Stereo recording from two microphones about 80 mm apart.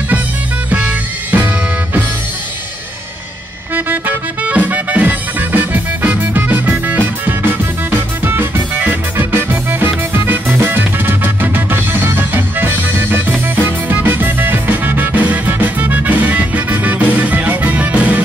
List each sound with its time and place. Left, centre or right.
0.7 s music: centre
4.5 s music: centre